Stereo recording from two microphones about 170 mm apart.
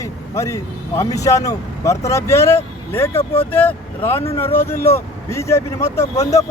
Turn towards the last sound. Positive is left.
turn(degrees=20)  # may be behind; listen again after turning